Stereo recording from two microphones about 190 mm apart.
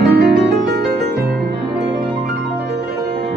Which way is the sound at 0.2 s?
55° right (ahead or behind).